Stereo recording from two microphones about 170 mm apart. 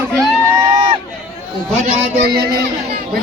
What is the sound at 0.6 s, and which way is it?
Run, 25° right (ahead or behind).